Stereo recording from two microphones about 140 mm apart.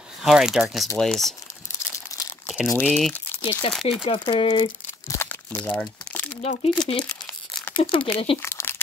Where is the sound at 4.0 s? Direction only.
35° left (ahead or behind).